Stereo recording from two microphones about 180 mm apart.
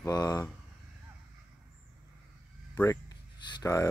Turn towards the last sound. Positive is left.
turn(degrees=20)  # may be behind; listen again after turning